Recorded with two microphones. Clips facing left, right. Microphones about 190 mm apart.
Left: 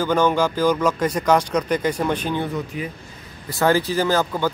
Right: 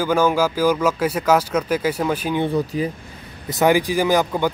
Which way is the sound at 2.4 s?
35° right (ahead or behind).